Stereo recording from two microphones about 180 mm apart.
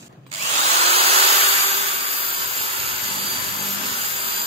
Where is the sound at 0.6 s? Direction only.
35° right (ahead or behind).